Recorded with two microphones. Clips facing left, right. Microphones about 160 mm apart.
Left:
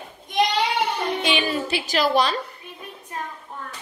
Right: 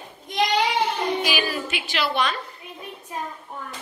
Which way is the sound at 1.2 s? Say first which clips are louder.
Left 3 dB; 25° left (ahead or behind).